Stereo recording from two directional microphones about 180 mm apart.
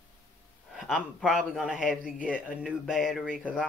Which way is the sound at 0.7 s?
Centre (ahead or behind).